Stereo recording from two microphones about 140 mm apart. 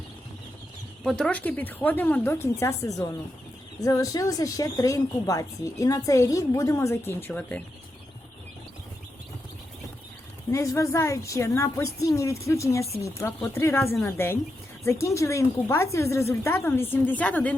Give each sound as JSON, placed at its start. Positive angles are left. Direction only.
{"t": 1.0, "sound": "speech", "side_deg": 5}
{"t": 10.5, "sound": "speech", "side_deg": 20}